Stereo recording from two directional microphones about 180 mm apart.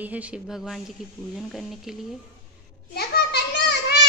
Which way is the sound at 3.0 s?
65° left (ahead or behind).